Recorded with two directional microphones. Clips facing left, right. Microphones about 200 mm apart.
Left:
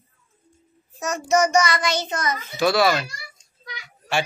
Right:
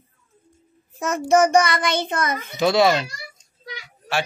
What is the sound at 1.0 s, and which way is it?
A child's voice, 55° right (ahead or behind).